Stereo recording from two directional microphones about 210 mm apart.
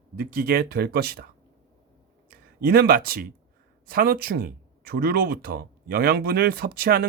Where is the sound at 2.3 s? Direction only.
45° right (ahead or behind).